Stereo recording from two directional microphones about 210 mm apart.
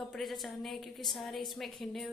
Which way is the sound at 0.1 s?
Centre (ahead or behind).